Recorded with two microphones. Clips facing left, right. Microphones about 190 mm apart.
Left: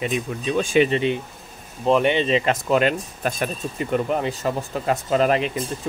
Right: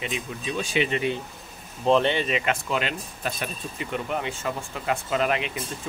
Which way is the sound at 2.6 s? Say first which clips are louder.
Left 9 dB; 45° left (ahead or behind).